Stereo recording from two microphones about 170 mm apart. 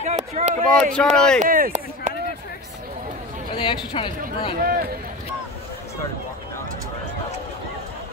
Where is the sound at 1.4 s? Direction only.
50° right (ahead or behind).